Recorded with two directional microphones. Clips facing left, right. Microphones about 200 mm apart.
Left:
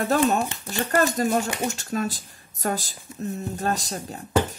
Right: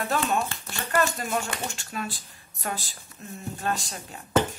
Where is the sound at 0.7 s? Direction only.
40° left (ahead or behind).